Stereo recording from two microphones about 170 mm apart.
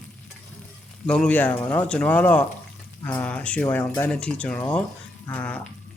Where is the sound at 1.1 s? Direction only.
5° left (ahead or behind).